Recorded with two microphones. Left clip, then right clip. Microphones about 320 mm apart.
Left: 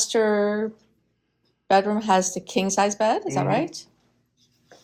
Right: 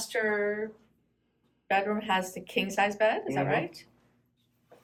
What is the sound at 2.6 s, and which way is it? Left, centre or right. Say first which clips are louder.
Speech: left 5 dB; centre.